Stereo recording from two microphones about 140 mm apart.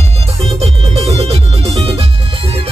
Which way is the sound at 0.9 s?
45° right (ahead or behind).